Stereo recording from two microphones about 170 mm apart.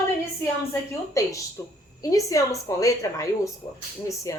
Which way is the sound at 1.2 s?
15° left (ahead or behind).